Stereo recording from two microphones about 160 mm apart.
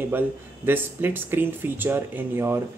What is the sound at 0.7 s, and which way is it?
Speech, 10° right (ahead or behind).